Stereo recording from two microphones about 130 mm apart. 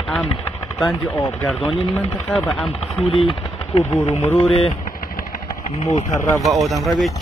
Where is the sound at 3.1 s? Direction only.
45° left (ahead or behind).